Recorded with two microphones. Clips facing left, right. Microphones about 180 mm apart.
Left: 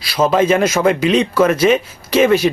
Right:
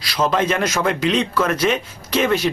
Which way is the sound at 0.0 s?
10° left (ahead or behind).